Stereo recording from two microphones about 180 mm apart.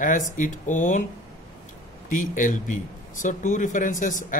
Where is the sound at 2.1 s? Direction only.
45° left (ahead or behind).